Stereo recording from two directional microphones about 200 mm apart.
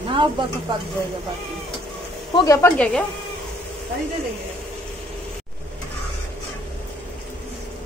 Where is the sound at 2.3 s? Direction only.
15° left (ahead or behind).